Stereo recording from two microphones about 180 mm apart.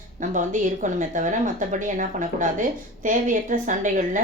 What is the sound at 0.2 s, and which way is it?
Speech, 45° right (ahead or behind).